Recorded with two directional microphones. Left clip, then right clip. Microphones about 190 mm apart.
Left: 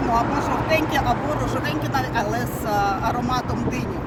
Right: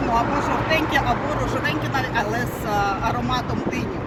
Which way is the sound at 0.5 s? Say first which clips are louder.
Left 2 dB; 45° left (ahead or behind).